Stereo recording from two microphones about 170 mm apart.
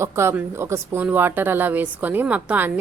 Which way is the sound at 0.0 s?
15° right (ahead or behind).